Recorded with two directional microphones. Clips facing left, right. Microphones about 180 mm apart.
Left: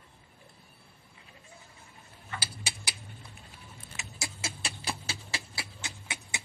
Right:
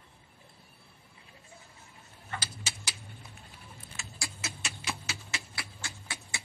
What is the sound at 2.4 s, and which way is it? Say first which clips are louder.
Tick-tock: left 1 dB; 15° left (ahead or behind).